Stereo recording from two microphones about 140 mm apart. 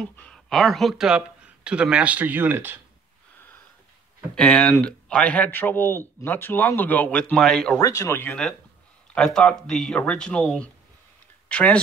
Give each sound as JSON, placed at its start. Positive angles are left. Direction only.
{"t": 0.1, "sound": "speech", "side_deg": 10}
{"t": 4.4, "sound": "a man's voice", "side_deg": 5}
{"t": 7.7, "sound": "a man's voice", "side_deg": 20}